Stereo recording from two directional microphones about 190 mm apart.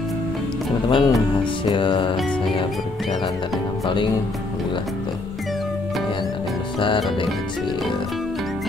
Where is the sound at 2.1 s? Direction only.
5° left (ahead or behind).